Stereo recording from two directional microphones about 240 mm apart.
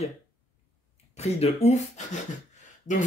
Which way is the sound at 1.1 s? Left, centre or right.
Left.